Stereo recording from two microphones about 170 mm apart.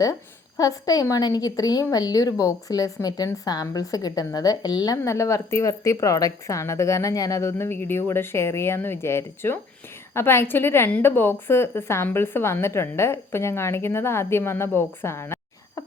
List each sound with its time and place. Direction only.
0.0 s a woman's voice: 20° left (ahead or behind)